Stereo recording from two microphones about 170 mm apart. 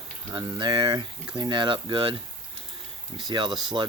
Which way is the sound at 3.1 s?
25° right (ahead or behind).